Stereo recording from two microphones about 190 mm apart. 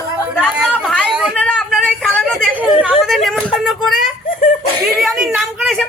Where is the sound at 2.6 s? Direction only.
5° right (ahead or behind).